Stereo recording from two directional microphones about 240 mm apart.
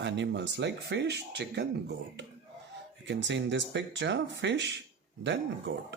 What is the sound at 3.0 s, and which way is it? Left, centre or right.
A man's voice, right.